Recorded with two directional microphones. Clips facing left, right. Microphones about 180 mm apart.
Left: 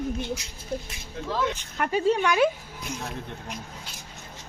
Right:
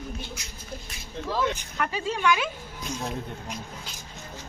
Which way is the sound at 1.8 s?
45° left (ahead or behind).